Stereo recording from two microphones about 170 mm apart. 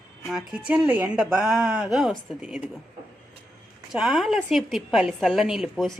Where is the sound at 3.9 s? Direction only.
Centre (ahead or behind).